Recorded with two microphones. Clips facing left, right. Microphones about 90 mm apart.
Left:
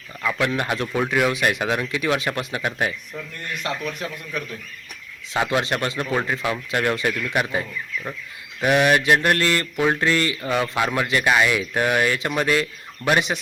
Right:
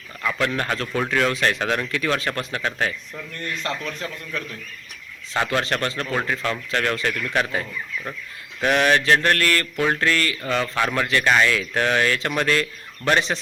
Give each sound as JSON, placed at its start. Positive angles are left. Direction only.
{"t": 0.3, "sound": "speech", "side_deg": 15}